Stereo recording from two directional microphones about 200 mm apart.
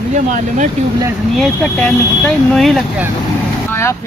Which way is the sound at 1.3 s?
Centre (ahead or behind).